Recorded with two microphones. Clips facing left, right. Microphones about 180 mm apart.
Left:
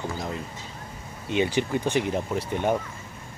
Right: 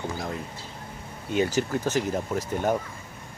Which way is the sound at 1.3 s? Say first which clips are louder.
Even; 45° right (ahead or behind).